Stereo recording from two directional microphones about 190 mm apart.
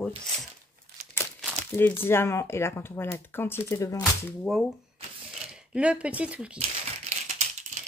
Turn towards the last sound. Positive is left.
turn(degrees=-40)  # may be behind; listen again after turning